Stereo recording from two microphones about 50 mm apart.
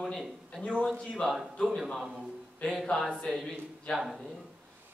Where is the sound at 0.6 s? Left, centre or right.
Left.